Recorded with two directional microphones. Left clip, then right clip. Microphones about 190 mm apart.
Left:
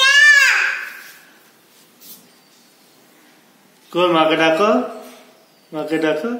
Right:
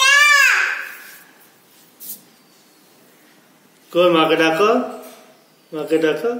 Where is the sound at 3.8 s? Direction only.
40° left (ahead or behind).